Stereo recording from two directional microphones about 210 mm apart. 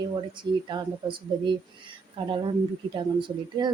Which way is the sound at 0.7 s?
25° right (ahead or behind).